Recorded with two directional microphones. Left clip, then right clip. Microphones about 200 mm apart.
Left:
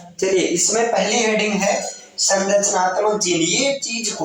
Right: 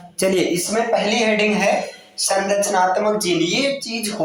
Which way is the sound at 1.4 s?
25° right (ahead or behind).